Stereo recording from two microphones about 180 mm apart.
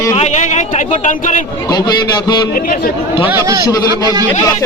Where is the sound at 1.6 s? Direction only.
25° left (ahead or behind).